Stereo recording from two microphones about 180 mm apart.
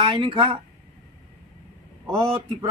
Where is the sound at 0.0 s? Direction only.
25° right (ahead or behind).